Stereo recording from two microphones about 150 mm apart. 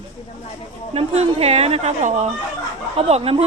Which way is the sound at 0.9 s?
40° right (ahead or behind).